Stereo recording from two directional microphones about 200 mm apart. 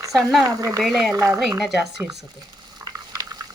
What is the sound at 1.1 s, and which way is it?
Speech, 15° right (ahead or behind).